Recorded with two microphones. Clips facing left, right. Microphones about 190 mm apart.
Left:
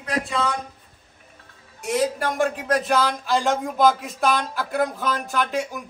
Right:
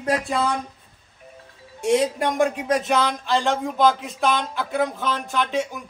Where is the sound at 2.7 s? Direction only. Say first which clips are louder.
Even; centre (ahead or behind).